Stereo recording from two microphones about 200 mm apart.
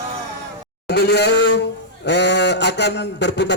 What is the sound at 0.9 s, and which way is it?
Speech, 55° left (ahead or behind).